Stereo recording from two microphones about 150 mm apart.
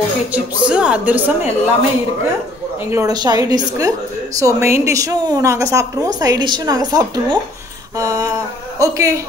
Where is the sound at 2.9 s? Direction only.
25° right (ahead or behind).